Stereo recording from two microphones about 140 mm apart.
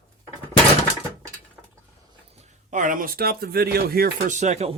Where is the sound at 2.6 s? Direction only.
65° right (ahead or behind).